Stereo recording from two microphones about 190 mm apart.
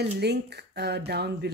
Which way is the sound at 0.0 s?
60° right (ahead or behind).